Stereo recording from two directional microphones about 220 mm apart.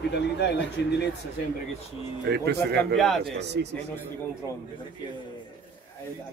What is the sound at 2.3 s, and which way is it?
Speech, 50° right (ahead or behind).